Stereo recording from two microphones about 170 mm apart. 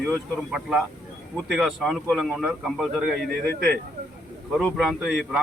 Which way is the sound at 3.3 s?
70° right (ahead or behind).